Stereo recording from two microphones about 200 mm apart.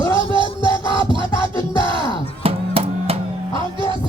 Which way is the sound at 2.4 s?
30° right (ahead or behind).